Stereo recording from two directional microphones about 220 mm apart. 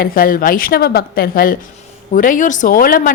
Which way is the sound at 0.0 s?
40° left (ahead or behind).